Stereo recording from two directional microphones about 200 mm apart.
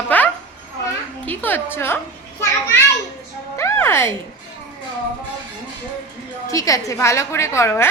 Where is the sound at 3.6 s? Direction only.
15° left (ahead or behind).